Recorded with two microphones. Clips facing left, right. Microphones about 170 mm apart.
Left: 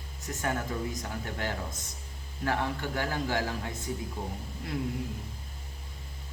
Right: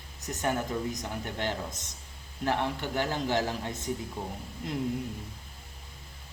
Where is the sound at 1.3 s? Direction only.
20° right (ahead or behind).